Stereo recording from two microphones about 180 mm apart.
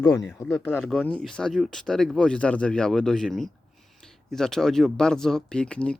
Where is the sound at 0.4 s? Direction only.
Centre (ahead or behind).